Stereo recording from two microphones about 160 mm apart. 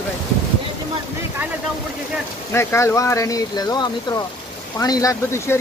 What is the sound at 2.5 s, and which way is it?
Speech, 15° left (ahead or behind).